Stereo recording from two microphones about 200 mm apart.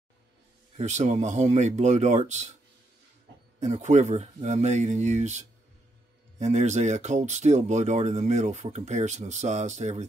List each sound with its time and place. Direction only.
0.7 s speech: 35° right (ahead or behind)
3.5 s speech: 35° right (ahead or behind)